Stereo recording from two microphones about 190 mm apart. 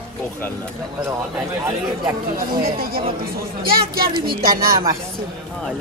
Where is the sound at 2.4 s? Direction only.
50° right (ahead or behind).